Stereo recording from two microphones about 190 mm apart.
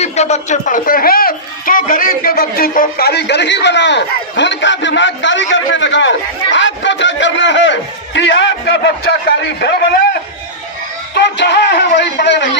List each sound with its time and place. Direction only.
0.0 s a man's voice: 35° left (ahead or behind); by 9.7 s 65° left (ahead or behind)
11.1 s speech: 65° left (ahead or behind)